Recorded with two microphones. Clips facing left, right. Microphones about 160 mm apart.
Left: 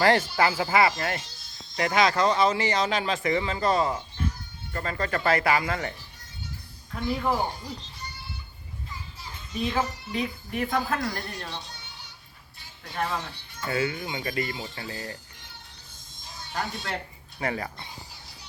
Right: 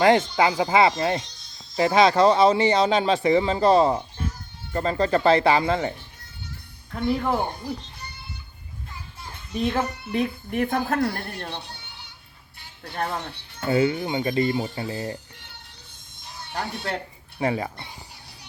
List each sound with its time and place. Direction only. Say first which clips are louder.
0.0 s speech: right 4 dB; 20° right (ahead or behind)
1.2 s music: even; 5° left (ahead or behind)
1.8 s speech: right 6 dB; 25° right (ahead or behind)
8.9 s a child's voice: right 2 dB; 60° right (ahead or behind)
12.5 s music: right 2 dB; 60° right (ahead or behind)
13.7 s speech: right 7 dB; 25° right (ahead or behind)
16.2 s music: right 1 dB; 60° right (ahead or behind)
17.4 s speech: right 5 dB; 20° right (ahead or behind)